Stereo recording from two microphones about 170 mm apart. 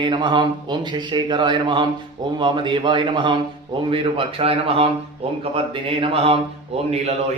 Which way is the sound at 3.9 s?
30° right (ahead or behind).